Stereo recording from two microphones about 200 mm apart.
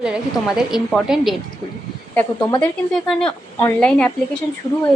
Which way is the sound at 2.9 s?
Centre (ahead or behind).